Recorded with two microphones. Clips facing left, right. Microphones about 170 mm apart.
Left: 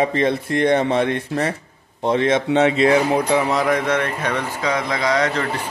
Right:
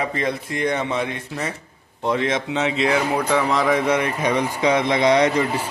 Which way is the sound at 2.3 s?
55° left (ahead or behind).